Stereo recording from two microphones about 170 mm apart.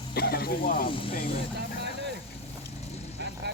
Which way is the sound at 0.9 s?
30° left (ahead or behind).